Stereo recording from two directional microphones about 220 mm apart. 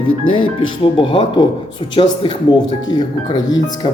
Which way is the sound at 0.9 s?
20° left (ahead or behind).